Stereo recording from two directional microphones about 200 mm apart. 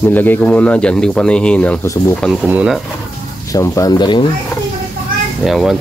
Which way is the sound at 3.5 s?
15° left (ahead or behind).